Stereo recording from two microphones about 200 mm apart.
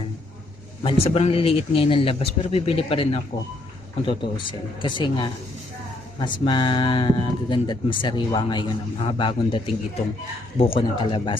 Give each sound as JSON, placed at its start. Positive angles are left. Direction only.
{"t": 0.8, "sound": "speech", "side_deg": 30}